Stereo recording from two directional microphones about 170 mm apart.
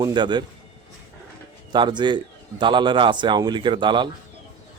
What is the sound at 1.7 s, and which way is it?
A man's voice, 25° right (ahead or behind).